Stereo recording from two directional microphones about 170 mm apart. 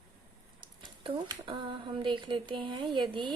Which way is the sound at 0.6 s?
25° right (ahead or behind).